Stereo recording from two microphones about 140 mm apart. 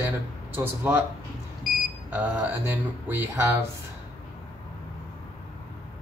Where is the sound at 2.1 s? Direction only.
15° right (ahead or behind).